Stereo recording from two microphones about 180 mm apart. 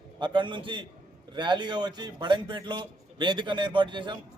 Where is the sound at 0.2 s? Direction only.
25° right (ahead or behind).